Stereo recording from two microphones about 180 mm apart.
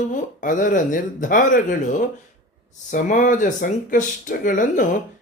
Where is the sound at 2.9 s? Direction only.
45° left (ahead or behind).